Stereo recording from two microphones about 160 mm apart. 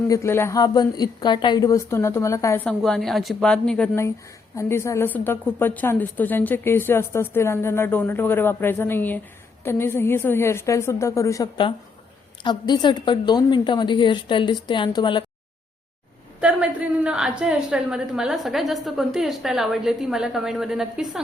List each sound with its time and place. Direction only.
0.1 s a woman's voice: 15° left (ahead or behind)
2.6 s a woman's voice: 5° left (ahead or behind)
4.5 s a woman's voice: 15° left (ahead or behind)
16.4 s a woman's voice: 5° right (ahead or behind)